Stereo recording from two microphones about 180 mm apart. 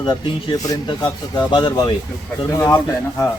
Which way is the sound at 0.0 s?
20° left (ahead or behind).